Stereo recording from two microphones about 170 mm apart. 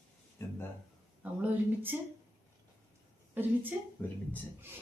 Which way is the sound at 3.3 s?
10° right (ahead or behind).